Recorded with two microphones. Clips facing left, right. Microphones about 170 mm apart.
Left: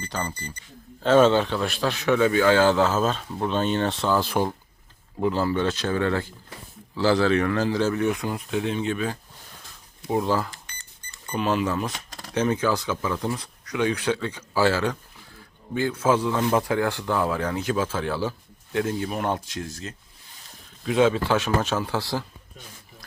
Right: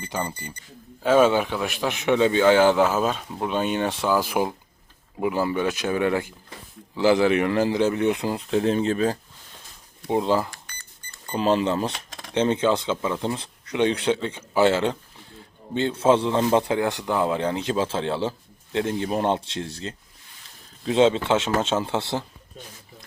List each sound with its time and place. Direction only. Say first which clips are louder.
0.0 s a man's voice: right 2 dB; 15° right (ahead or behind)
1.0 s a man's voice: left 1 dB; 10° right (ahead or behind); by 9.1 s 35° right (ahead or behind)
10.1 s a man's voice: right 2 dB; 20° right (ahead or behind)
11.3 s a man's voice: right 3 dB; 30° right (ahead or behind)